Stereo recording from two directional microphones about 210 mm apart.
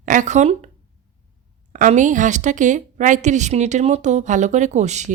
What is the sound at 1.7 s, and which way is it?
A woman's voice, 35° right (ahead or behind).